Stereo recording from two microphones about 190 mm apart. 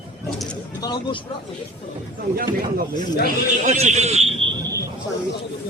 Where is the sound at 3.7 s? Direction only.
40° right (ahead or behind).